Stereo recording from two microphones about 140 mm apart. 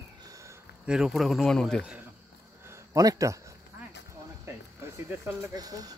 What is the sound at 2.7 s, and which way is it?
Speech, 25° right (ahead or behind).